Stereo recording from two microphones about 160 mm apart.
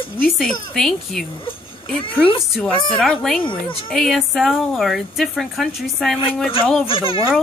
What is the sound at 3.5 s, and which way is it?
Speech, 30° left (ahead or behind).